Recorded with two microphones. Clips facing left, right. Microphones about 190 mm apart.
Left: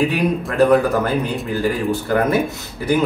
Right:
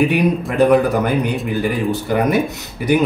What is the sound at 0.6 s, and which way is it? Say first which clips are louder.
A man's voice: right 1 dB; 15° right (ahead or behind).